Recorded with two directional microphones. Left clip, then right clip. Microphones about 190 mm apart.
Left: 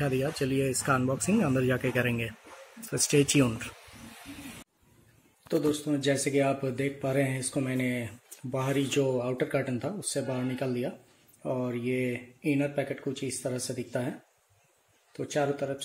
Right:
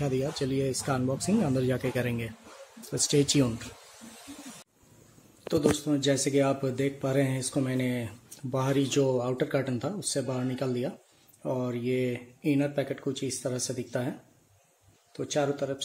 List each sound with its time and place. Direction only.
0.0 s speech: 5° left (ahead or behind)
6.0 s speech: 5° right (ahead or behind)
15.3 s speech: centre (ahead or behind)